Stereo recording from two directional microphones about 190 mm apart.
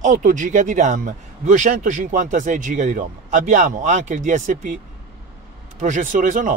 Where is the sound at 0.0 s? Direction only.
40° right (ahead or behind).